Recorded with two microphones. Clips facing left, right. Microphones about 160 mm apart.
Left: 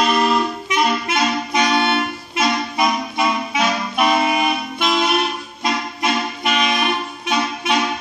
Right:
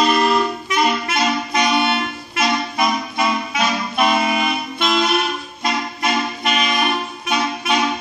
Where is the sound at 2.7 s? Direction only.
10° left (ahead or behind).